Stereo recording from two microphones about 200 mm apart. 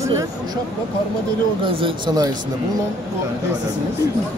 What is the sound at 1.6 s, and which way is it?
Speech, 25° right (ahead or behind).